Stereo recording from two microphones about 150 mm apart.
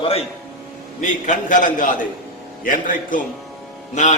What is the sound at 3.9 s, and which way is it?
Speech, 50° left (ahead or behind).